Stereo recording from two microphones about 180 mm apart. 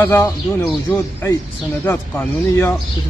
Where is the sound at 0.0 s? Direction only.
15° left (ahead or behind).